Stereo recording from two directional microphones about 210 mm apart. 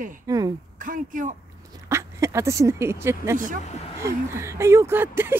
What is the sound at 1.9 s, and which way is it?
Speech, 15° right (ahead or behind).